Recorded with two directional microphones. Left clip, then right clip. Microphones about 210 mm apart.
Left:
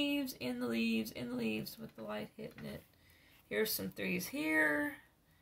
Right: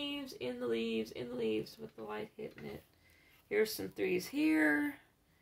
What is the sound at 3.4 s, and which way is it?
Speech, 25° right (ahead or behind).